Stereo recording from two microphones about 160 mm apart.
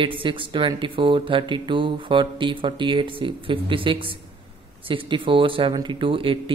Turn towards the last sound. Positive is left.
turn(degrees=-35)  # may be behind; listen again after turning